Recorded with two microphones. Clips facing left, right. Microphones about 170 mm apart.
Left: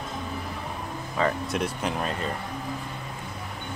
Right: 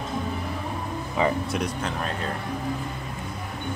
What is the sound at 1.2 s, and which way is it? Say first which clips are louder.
Speech: right 2 dB; 15° right (ahead or behind).